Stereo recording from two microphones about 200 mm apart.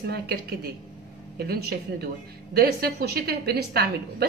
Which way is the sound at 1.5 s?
50° right (ahead or behind).